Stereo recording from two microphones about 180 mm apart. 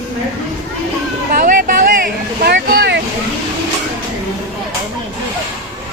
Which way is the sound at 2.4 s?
60° right (ahead or behind).